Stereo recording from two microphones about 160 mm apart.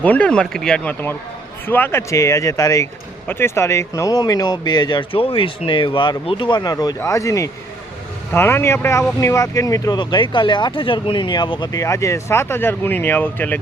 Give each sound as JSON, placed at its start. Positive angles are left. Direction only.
{"t": 0.0, "sound": "speech", "side_deg": 10}